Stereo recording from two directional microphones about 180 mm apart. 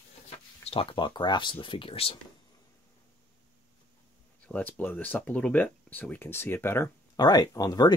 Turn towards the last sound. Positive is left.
turn(degrees=20)  # may be behind; listen again after turning